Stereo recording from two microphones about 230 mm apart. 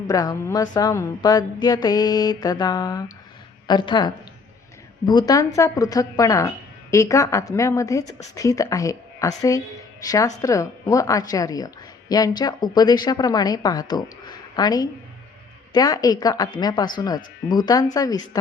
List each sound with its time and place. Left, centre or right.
0.1 s a woman's voice: centre